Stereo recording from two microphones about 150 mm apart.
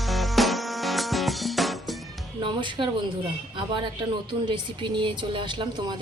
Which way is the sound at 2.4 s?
35° right (ahead or behind).